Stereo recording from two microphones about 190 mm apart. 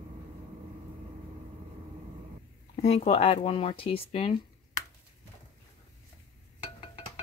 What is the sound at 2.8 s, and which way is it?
Speech, 35° left (ahead or behind).